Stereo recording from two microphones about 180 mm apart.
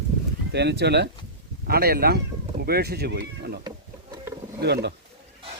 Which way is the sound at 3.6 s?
20° right (ahead or behind).